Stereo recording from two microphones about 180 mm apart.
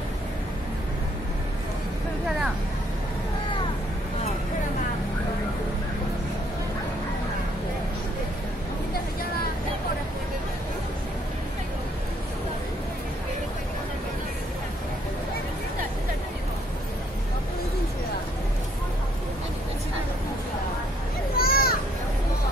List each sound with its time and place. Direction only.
21.4 s children playing: 55° left (ahead or behind)